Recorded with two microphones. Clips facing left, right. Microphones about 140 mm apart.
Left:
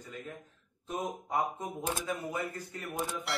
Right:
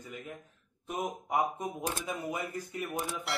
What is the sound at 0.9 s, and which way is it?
A man's voice, 15° right (ahead or behind).